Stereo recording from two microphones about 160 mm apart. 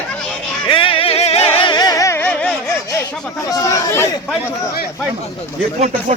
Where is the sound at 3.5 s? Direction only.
20° left (ahead or behind).